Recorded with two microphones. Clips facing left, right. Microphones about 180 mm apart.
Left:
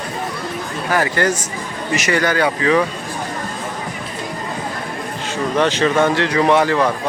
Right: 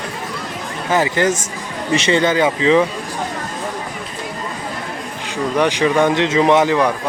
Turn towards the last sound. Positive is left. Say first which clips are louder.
# right 1 dB
turn(degrees=-15)  # may be behind; listen again after turning